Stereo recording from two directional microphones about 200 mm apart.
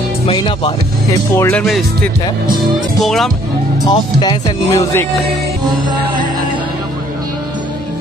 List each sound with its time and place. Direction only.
0.3 s speech: 25° left (ahead or behind)
1.3 s speech: 15° left (ahead or behind)
3.0 s speech: centre (ahead or behind)
3.8 s speech: 20° left (ahead or behind)